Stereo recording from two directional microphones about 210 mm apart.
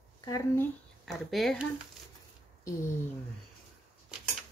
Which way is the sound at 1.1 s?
Centre (ahead or behind).